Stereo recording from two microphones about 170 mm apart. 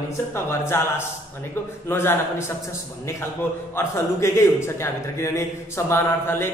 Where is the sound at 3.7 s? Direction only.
15° left (ahead or behind).